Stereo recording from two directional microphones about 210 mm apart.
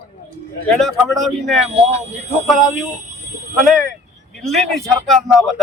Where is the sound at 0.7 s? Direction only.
Centre (ahead or behind).